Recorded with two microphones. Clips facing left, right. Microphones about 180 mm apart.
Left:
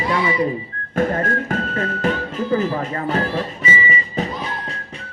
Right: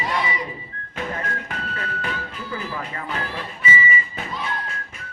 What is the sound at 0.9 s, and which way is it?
Music, 45° left (ahead or behind).